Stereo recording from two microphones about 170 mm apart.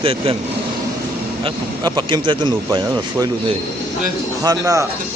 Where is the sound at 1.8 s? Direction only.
25° right (ahead or behind).